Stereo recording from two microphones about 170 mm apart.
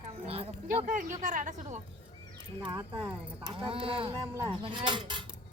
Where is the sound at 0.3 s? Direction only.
35° right (ahead or behind).